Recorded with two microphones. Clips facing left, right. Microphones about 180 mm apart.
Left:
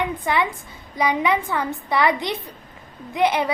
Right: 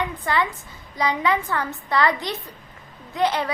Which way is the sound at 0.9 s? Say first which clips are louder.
Left 2 dB; 15° left (ahead or behind).